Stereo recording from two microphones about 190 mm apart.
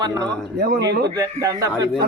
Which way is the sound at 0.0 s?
20° right (ahead or behind).